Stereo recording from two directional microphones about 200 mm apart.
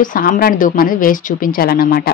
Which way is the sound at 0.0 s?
45° left (ahead or behind).